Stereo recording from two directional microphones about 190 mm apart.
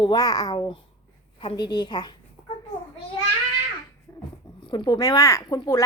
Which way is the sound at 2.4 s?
25° right (ahead or behind).